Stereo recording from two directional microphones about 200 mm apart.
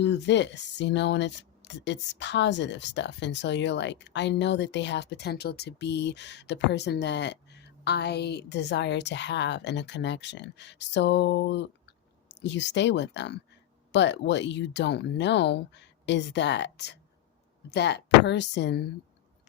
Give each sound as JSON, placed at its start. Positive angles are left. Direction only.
{"t": 0.0, "sound": "speech", "side_deg": 60}